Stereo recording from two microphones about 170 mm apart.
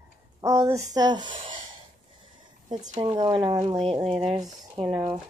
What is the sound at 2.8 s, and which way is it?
Speech, 40° right (ahead or behind).